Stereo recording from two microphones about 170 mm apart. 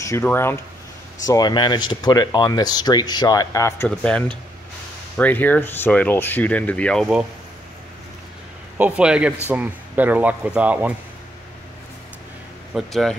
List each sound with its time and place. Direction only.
0.0 s speech: 15° left (ahead or behind)
8.7 s speech: 10° right (ahead or behind)
12.7 s speech: centre (ahead or behind)